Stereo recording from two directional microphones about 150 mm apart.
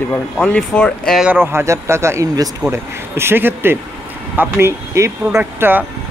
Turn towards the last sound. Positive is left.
turn(degrees=-15)  # may be behind; listen again after turning